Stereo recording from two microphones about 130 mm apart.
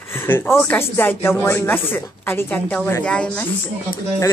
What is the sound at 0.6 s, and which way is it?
Speech, 15° left (ahead or behind).